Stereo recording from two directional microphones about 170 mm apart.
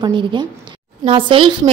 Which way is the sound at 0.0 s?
25° right (ahead or behind).